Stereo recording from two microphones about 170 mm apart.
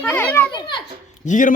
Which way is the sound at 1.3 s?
50° left (ahead or behind).